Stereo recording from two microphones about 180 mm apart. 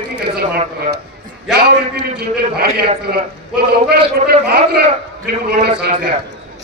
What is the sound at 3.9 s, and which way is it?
Speech, 65° right (ahead or behind).